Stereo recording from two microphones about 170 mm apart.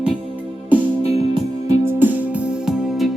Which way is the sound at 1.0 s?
40° left (ahead or behind).